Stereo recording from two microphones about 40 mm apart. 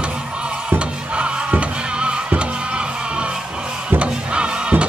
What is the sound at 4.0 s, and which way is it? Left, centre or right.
Music, right.